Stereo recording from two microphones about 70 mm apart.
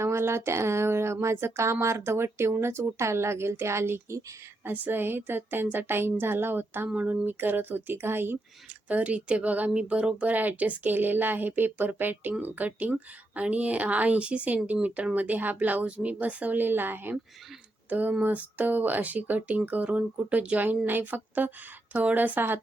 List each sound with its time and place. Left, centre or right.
0.0 s speech: right
4.6 s a woman's voice: right
8.9 s a woman's voice: centre